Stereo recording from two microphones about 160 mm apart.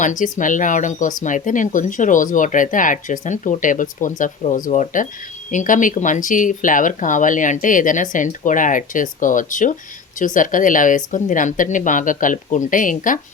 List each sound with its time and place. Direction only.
0.0 s speech: 55° left (ahead or behind)